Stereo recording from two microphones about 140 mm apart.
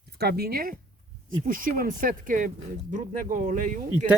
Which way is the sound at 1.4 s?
80° right.